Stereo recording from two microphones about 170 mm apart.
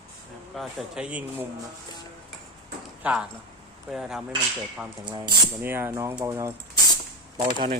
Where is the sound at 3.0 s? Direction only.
5° right (ahead or behind).